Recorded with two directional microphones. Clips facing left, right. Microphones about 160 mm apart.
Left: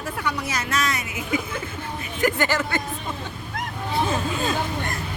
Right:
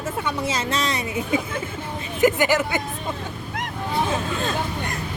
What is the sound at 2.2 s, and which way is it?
Speech, 20° right (ahead or behind).